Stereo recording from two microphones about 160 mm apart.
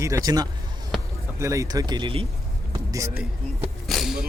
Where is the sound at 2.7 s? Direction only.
20° right (ahead or behind).